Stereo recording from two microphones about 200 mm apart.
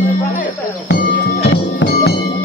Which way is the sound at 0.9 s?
55° left (ahead or behind).